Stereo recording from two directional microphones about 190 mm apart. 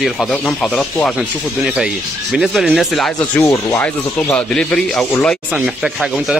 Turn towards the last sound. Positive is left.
turn(degrees=0)  # may be behind; listen again after turning